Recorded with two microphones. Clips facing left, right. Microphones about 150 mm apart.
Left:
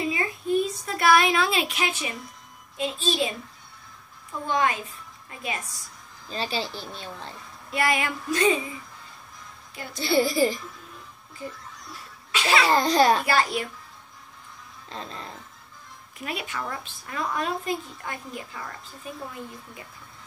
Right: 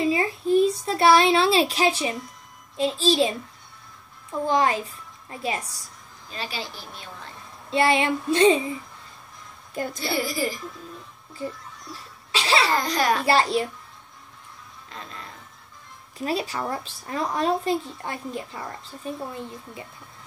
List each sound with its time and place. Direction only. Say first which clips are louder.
0.0 s a sound: right 5 dB; 30° right (ahead or behind)
2.8 s speech: right 5 dB; 30° right (ahead or behind)
4.5 s a woman's voice: right 3 dB; 30° right (ahead or behind)
6.2 s speech: left 4 dB; 30° left (ahead or behind)
7.7 s child singing: right 5 dB; 25° right (ahead or behind)
9.8 s a child's voice: right 10 dB; 45° right (ahead or behind)
10.1 s speech: left 7 dB; 25° left (ahead or behind)
12.3 s a child's voice: even; 30° right (ahead or behind)
12.7 s speech: left 3 dB; 25° left (ahead or behind)
13.2 s speech: right 3 dB; 30° right (ahead or behind)
14.9 s music: left 3 dB; 30° left (ahead or behind)
16.2 s speech: right 6 dB; 35° right (ahead or behind)